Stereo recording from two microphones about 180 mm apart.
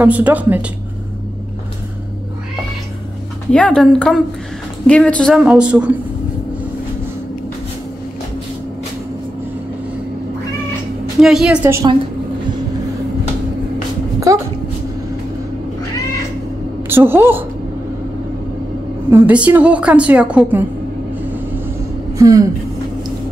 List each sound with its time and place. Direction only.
0.0 s a woman's voice: 10° right (ahead or behind)
3.5 s a woman's voice: 5° left (ahead or behind)
5.4 s a woman's voice: 5° right (ahead or behind)
11.1 s a woman's voice: 5° right (ahead or behind)
14.3 s a woman's voice: 20° right (ahead or behind)
16.9 s a woman's voice: 10° right (ahead or behind)
19.0 s a woman's voice: 10° right (ahead or behind)
22.2 s a woman's voice: 20° right (ahead or behind)